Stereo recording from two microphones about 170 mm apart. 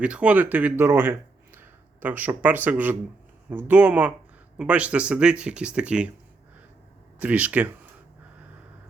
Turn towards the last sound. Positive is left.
turn(degrees=-10)  # may be behind; listen again after turning